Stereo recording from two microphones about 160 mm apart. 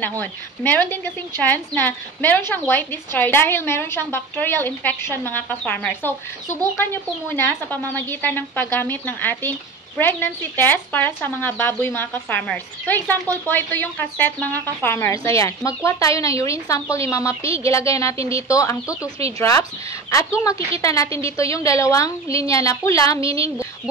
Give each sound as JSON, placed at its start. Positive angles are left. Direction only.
{"t": 0.2, "sound": "a woman's voice", "side_deg": 10}
{"t": 20.1, "sound": "a woman's voice", "side_deg": 20}